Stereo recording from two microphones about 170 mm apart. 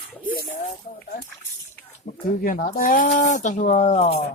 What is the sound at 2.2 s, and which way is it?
Speech, 55° left (ahead or behind).